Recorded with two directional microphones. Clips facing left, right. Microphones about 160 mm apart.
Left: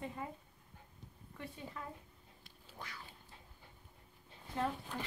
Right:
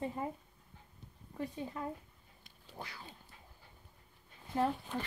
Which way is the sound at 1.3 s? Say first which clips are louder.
Right 8 dB; 35° right (ahead or behind).